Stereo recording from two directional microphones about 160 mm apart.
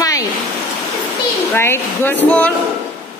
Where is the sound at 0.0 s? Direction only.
20° left (ahead or behind).